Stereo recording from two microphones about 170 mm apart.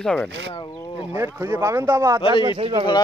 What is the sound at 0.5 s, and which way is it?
Speech, 25° left (ahead or behind).